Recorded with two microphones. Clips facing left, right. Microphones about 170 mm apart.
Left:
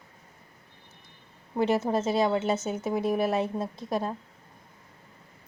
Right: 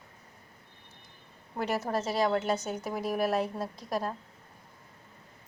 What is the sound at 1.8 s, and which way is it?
Speech, 20° left (ahead or behind).